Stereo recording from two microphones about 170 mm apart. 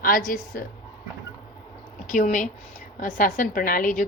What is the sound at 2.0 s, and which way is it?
A woman's voice, 50° left (ahead or behind).